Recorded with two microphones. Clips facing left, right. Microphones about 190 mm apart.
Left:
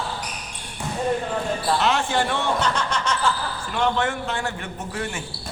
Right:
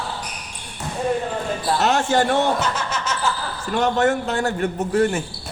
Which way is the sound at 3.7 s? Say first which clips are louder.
Right 5 dB; 40° right (ahead or behind).